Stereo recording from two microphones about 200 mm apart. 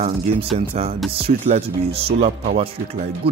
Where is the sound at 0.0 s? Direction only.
30° right (ahead or behind).